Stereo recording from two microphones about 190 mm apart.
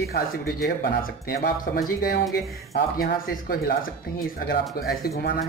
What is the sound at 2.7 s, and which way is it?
Speech, 50° left (ahead or behind).